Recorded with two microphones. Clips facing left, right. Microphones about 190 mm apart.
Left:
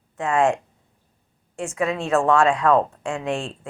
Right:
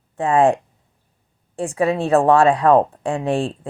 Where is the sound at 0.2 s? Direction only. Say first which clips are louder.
Right 4 dB; 35° right (ahead or behind).